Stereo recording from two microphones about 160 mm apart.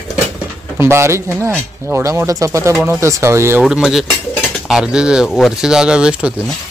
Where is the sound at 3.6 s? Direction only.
5° right (ahead or behind).